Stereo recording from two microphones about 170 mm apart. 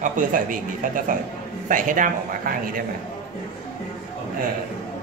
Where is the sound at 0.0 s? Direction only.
50° right (ahead or behind).